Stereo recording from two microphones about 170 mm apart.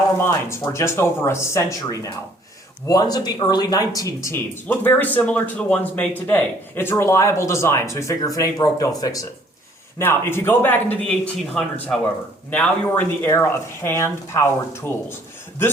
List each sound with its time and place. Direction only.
0.2 s a man's voice: 15° left (ahead or behind)